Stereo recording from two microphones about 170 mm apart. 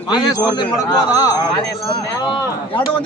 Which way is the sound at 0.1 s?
25° left (ahead or behind).